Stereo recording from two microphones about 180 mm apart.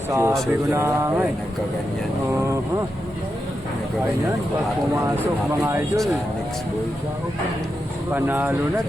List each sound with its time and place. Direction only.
0.1 s speech: 15° right (ahead or behind)
8.1 s speech: 10° right (ahead or behind)